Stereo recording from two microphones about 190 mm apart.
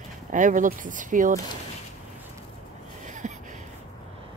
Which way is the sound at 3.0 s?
40° right (ahead or behind).